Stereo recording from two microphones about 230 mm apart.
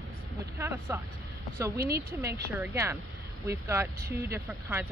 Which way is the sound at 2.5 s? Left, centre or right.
Centre.